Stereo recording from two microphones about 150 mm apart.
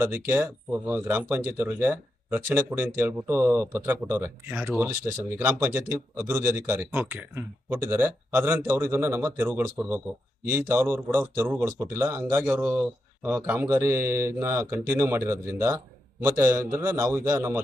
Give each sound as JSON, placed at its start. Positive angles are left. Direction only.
{"t": 0.0, "sound": "speech", "side_deg": -15}